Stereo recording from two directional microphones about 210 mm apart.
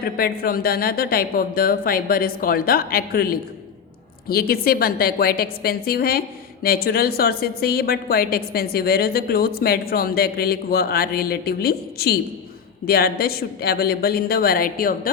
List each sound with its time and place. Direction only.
0.0 s a woman's voice: 45° left (ahead or behind)